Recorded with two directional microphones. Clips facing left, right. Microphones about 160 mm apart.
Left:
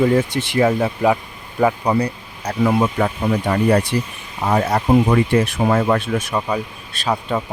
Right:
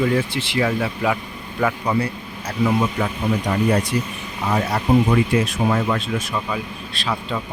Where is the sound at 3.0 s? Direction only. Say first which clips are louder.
Left 4 dB; 55° left (ahead or behind).